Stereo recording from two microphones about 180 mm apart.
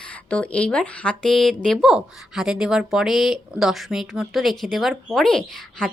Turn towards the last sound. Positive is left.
turn(degrees=5)  # may be behind; listen again after turning